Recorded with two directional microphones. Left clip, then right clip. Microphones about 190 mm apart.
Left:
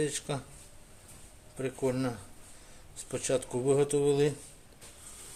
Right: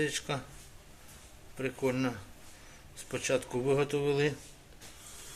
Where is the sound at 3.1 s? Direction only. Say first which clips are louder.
Even; 15° left (ahead or behind).